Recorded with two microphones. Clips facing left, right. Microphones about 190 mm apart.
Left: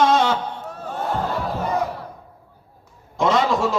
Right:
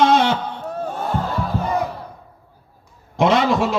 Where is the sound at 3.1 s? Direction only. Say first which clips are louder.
Right 3 dB; 70° right (ahead or behind).